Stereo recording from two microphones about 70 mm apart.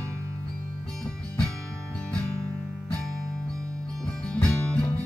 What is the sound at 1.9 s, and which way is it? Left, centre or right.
Music, centre.